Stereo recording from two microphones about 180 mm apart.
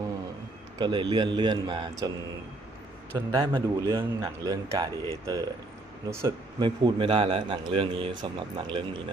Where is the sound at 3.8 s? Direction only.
15° right (ahead or behind).